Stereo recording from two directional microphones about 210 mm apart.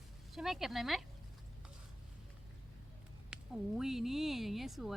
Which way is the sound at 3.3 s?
Centre (ahead or behind).